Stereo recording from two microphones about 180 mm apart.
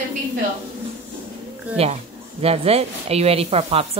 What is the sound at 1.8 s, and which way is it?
Speech, 35° right (ahead or behind).